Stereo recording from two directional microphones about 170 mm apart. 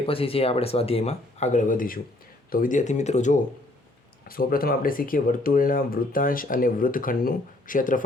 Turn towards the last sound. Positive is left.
turn(degrees=50)  # may be behind; listen again after turning